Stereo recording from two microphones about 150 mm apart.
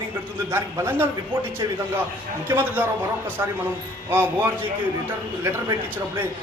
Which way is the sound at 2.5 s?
15° right (ahead or behind).